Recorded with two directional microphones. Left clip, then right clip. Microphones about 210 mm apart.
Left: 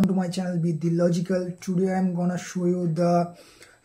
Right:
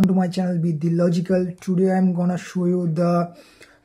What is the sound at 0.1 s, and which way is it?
Speech, 35° right (ahead or behind).